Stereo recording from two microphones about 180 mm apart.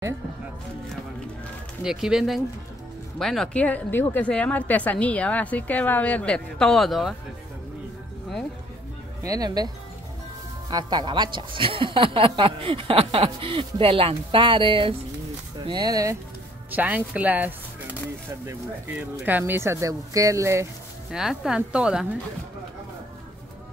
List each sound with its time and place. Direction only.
1.8 s a woman's voice: 5° right (ahead or behind)
9.2 s a woman's voice: 20° right (ahead or behind)
10.7 s a woman's voice: 20° right (ahead or behind)
16.7 s speech: 10° right (ahead or behind)
21.1 s speech: 5° right (ahead or behind)